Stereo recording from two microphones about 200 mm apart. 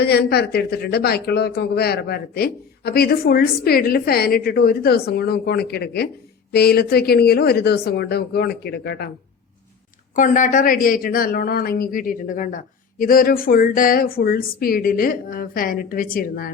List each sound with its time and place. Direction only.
0.0 s speech: 55° left (ahead or behind)
10.2 s speech: 40° left (ahead or behind)